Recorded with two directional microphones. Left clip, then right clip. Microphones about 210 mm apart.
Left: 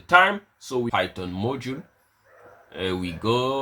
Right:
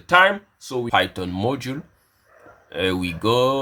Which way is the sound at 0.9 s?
35° right (ahead or behind).